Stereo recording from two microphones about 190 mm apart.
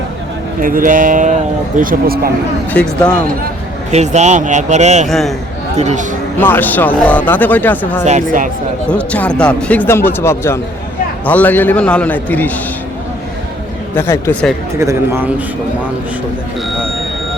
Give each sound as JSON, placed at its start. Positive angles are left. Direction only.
{"t": 0.6, "sound": "speech", "side_deg": -45}
{"t": 2.7, "sound": "speech", "side_deg": 5}
{"t": 3.9, "sound": "speech", "side_deg": -35}
{"t": 5.0, "sound": "a man's voice", "side_deg": 0}
{"t": 5.7, "sound": "speech", "side_deg": -35}
{"t": 6.4, "sound": "speech", "side_deg": 10}
{"t": 8.0, "sound": "speech", "side_deg": -40}
{"t": 8.9, "sound": "speech", "side_deg": 5}
{"t": 13.9, "sound": "speech", "side_deg": 10}
{"t": 14.8, "sound": "a man's voice", "side_deg": -15}